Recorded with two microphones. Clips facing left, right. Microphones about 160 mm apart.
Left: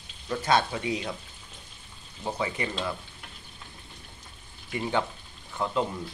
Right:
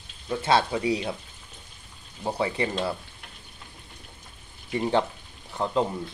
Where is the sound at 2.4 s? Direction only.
35° right (ahead or behind).